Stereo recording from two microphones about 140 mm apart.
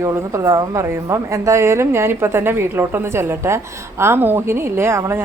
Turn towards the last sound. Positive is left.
turn(degrees=-20)  # may be behind; listen again after turning